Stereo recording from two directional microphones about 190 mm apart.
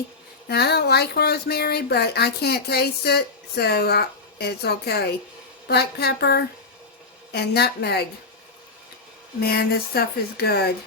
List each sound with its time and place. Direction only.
0.4 s speech: 60° left (ahead or behind)
9.4 s speech: 55° left (ahead or behind)